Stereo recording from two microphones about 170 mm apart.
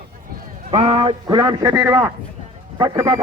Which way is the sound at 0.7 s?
35° right (ahead or behind).